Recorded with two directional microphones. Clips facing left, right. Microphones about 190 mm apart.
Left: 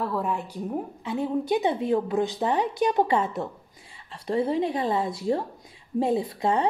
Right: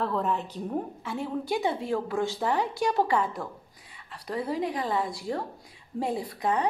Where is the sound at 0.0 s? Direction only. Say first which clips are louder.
Even; 10° left (ahead or behind).